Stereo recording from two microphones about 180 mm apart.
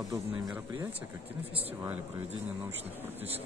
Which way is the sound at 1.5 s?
35° right (ahead or behind).